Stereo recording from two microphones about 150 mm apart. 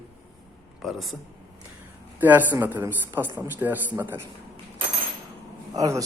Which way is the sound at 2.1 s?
10° right (ahead or behind).